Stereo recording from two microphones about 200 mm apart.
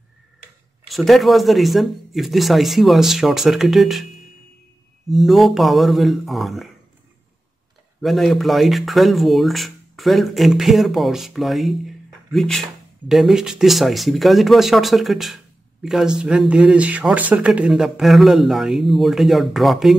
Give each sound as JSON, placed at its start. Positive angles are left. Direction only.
{"t": 0.8, "sound": "speech", "side_deg": 0}
{"t": 5.1, "sound": "speech", "side_deg": 0}
{"t": 8.0, "sound": "speech", "side_deg": 0}